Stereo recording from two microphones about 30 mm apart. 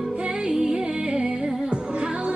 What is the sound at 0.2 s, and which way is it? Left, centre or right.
Music, right.